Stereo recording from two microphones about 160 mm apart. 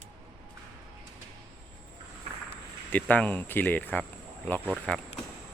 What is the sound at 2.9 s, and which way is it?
Speech, 10° left (ahead or behind).